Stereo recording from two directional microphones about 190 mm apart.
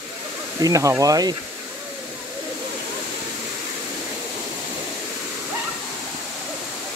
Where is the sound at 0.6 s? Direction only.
15° right (ahead or behind).